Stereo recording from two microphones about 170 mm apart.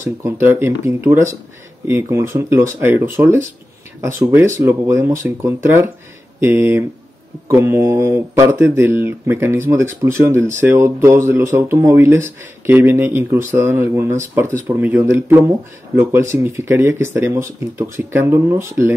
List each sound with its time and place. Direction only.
0.0 s speech: 15° right (ahead or behind)